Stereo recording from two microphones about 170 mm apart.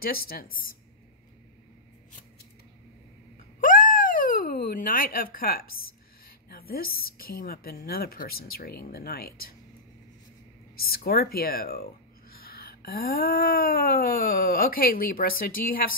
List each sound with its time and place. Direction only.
0.0 s speech: 60° left (ahead or behind)
3.6 s speech: 55° left (ahead or behind)
10.8 s speech: 60° left (ahead or behind)